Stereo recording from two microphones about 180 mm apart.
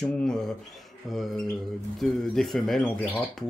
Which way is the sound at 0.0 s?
5° left (ahead or behind).